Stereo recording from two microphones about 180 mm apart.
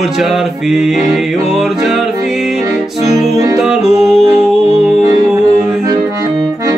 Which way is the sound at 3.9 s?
5° right (ahead or behind).